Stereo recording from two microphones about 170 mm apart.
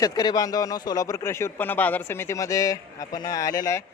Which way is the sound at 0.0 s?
20° left (ahead or behind).